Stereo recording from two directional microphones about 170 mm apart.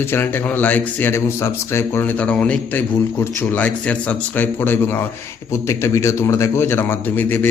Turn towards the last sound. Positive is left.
turn(degrees=10)  # may be behind; listen again after turning